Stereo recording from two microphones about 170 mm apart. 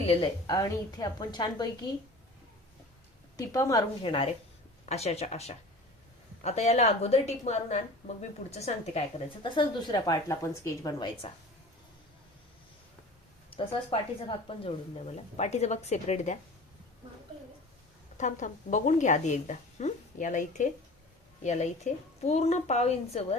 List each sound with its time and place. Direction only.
0.0 s a woman's voice: 35° left (ahead or behind)
0.4 s a woman's voice: 20° left (ahead or behind)
3.3 s a woman's voice: 20° left (ahead or behind)
4.0 s a woman's voice: 35° left (ahead or behind)
13.6 s speech: 30° left (ahead or behind)
18.2 s a woman's voice: 45° left (ahead or behind)